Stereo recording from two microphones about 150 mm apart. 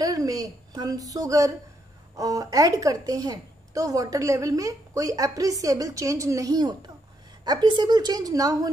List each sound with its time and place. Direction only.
0.0 s a woman's voice: 25° right (ahead or behind)